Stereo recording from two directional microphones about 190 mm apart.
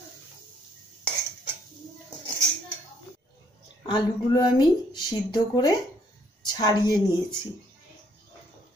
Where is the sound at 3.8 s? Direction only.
25° left (ahead or behind).